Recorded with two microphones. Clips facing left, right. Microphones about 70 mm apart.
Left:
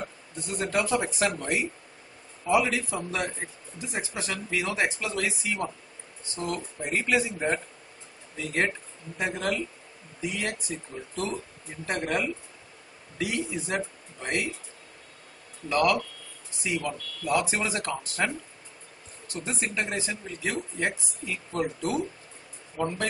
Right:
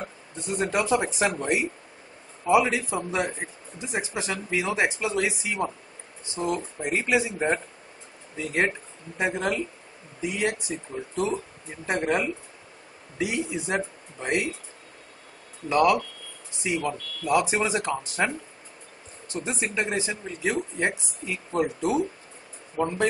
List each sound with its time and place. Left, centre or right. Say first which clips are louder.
0.4 s a man's voice: right 2 dB; centre
15.7 s a man's voice: right 3 dB; centre